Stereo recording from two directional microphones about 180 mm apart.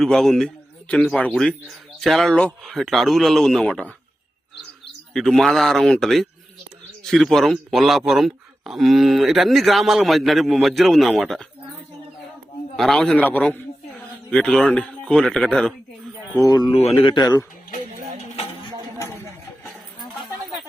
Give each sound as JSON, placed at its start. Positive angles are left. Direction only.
{"t": 0.0, "sound": "speech", "side_deg": 0}
{"t": 5.1, "sound": "speech", "side_deg": 0}
{"t": 12.7, "sound": "a man's voice", "side_deg": 5}
{"t": 16.3, "sound": "a man's voice", "side_deg": 20}
{"t": 17.0, "sound": "a man's voice", "side_deg": 30}
{"t": 18.9, "sound": "a sound", "side_deg": 15}